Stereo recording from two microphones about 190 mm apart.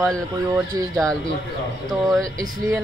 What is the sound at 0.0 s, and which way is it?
Speech, centre (ahead or behind).